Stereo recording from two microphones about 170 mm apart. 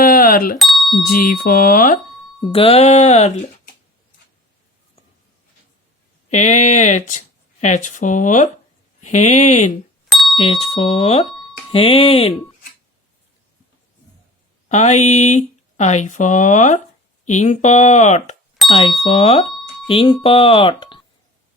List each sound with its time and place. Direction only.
0.0 s bicycle bell: 55° left (ahead or behind)
0.6 s bicycle bell: centre (ahead or behind)
0.9 s speech: 55° left (ahead or behind)
2.4 s speech: 35° left (ahead or behind)
6.3 s speech: 45° left (ahead or behind)
10.1 s doorbell: centre (ahead or behind)
10.3 s speech: 35° left (ahead or behind)
14.7 s speech: 45° left (ahead or behind)
18.6 s bicycle bell: centre (ahead or behind)
19.0 s speech: 40° left (ahead or behind)